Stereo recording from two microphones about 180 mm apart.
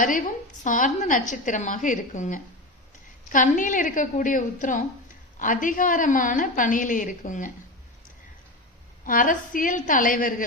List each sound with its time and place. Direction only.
0.0 s a woman's voice: 45° left (ahead or behind)
9.0 s a woman's voice: 50° left (ahead or behind)